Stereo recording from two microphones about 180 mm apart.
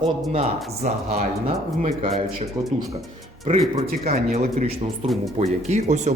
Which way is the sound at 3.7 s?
40° right (ahead or behind).